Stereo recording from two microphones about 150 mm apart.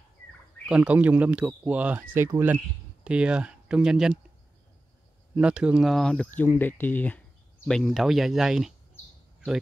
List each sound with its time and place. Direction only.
0.7 s speech: 10° right (ahead or behind)
5.3 s speech: 5° right (ahead or behind)